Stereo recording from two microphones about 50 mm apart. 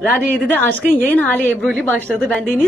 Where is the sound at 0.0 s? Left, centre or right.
Left.